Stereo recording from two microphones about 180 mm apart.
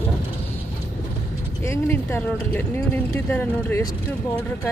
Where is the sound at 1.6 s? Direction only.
15° left (ahead or behind).